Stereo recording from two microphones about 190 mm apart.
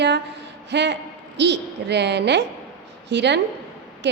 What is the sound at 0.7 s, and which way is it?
A woman's voice, 65° right (ahead or behind).